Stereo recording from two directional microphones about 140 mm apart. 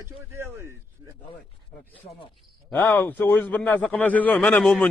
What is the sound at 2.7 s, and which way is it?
A man's voice, 10° left (ahead or behind).